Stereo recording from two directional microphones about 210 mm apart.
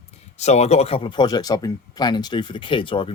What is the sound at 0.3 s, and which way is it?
Speech, 30° left (ahead or behind).